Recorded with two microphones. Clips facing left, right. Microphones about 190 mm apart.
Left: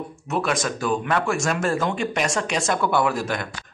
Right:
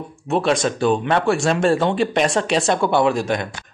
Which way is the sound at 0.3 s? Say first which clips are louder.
Right 6 dB; 30° right (ahead or behind).